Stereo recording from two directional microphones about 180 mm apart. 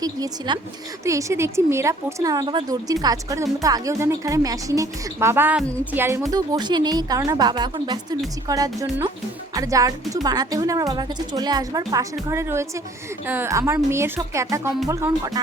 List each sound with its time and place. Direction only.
0.0 s speech: 25° right (ahead or behind)
5.6 s a woman's voice: 5° left (ahead or behind)
5.9 s a woman's voice: 10° right (ahead or behind)